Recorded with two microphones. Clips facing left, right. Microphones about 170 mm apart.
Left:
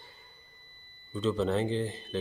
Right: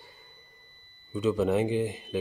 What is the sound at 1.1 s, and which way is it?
Speech, 10° right (ahead or behind).